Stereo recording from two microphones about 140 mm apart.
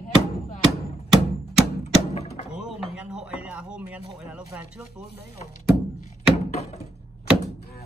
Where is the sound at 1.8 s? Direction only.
50° left (ahead or behind).